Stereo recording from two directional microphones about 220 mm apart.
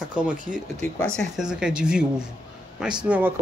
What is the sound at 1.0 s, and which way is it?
Speech, centre (ahead or behind).